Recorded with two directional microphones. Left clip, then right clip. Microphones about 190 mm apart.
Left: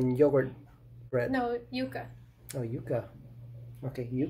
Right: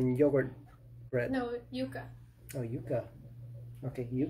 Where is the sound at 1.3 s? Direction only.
45° left (ahead or behind).